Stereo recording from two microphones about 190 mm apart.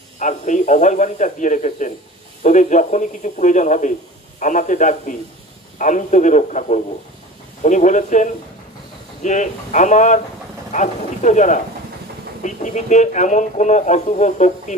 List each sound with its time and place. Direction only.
0.2 s a man's voice: 40° left (ahead or behind)